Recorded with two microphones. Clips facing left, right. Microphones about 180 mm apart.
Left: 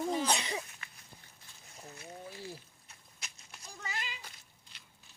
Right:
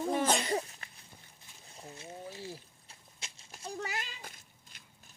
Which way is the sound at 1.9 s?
25° right (ahead or behind).